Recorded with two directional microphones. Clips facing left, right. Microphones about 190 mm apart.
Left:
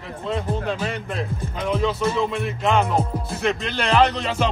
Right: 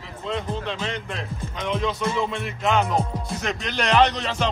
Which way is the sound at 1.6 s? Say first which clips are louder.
Left 3 dB; 5° left (ahead or behind).